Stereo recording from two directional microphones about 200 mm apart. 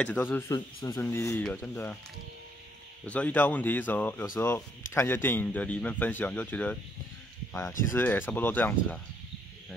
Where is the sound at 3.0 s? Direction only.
5° left (ahead or behind).